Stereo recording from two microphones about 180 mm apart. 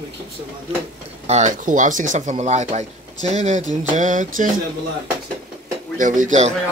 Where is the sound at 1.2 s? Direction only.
40° right (ahead or behind).